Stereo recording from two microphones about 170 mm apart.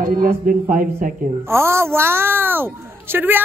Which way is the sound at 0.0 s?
55° right (ahead or behind).